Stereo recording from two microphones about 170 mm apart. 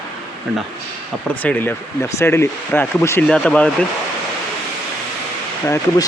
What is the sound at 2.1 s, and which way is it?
Speech, 15° left (ahead or behind).